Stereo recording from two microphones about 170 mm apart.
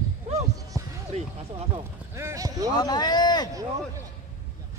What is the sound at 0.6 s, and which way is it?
Music, 20° right (ahead or behind).